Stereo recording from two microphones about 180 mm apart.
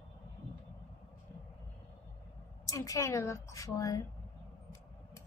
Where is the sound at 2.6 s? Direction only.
20° left (ahead or behind).